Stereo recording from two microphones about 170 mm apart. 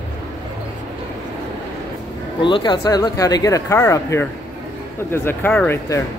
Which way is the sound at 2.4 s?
30° left (ahead or behind).